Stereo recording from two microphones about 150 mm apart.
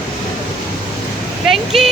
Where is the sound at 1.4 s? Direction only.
Centre (ahead or behind).